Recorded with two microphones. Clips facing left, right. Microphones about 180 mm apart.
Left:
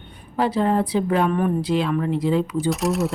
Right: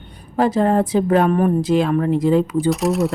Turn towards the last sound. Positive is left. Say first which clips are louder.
# right 4 dB
turn(degrees=0)  # may be behind; listen again after turning